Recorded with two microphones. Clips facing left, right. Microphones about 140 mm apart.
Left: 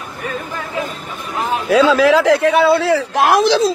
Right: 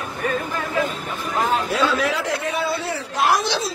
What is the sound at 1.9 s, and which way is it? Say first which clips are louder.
Speech: left 11 dB; 80° left.